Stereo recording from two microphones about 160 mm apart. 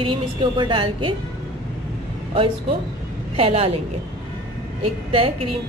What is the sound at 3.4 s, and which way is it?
Speech, 35° right (ahead or behind).